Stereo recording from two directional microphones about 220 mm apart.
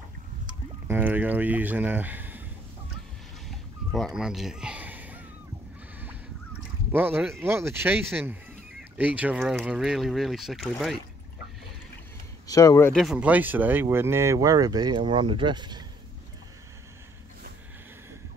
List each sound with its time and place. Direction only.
0.8 s speech: 10° right (ahead or behind)
3.4 s a sound: centre (ahead or behind)
6.9 s speech: 10° right (ahead or behind)
12.4 s speech: 15° left (ahead or behind)
12.9 s speech: centre (ahead or behind); by 15.8 s 20° right (ahead or behind)